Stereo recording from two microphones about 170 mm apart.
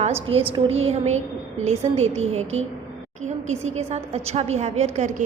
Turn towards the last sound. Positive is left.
turn(degrees=-40)  # may be behind; listen again after turning